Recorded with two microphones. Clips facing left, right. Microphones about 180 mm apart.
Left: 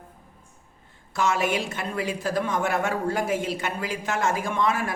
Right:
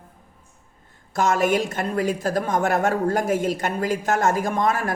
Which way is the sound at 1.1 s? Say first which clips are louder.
Right 4 dB; 45° right (ahead or behind).